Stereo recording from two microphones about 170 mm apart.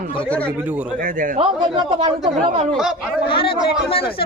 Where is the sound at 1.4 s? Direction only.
25° right (ahead or behind).